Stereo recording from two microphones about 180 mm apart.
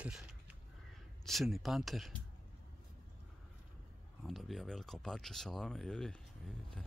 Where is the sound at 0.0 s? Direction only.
5° right (ahead or behind).